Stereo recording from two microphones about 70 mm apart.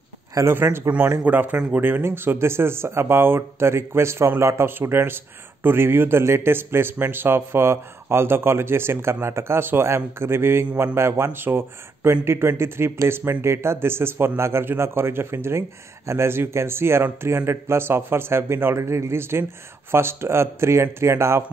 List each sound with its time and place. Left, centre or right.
0.4 s speech: right
1.2 s a man's voice: right